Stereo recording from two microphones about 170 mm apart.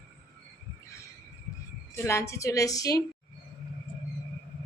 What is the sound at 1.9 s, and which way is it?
A woman's voice, 15° left (ahead or behind).